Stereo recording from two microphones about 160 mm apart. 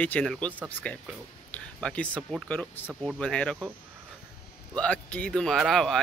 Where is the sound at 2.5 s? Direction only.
10° left (ahead or behind).